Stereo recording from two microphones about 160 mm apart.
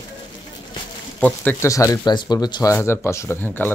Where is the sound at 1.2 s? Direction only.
10° left (ahead or behind).